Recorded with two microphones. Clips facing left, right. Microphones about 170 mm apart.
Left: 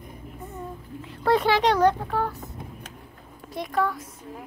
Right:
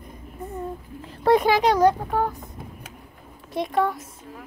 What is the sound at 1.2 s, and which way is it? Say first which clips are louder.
Speech: right 3 dB; 15° right (ahead or behind).